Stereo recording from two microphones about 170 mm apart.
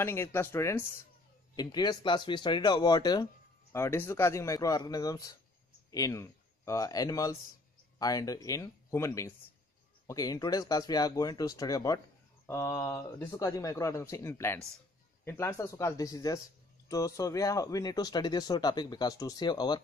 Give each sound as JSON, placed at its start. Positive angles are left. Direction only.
{"t": 0.0, "sound": "speech", "side_deg": 15}